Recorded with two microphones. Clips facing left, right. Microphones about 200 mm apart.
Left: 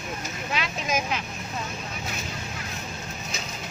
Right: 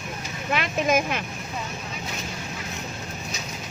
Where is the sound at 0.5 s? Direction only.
55° right (ahead or behind).